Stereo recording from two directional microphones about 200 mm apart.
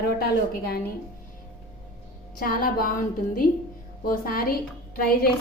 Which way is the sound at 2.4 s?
45° left (ahead or behind).